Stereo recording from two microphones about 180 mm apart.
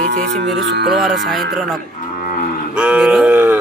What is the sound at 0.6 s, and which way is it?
Speech, 65° right (ahead or behind).